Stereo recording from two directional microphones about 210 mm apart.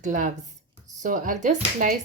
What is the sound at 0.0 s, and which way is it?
Speech, 35° right (ahead or behind).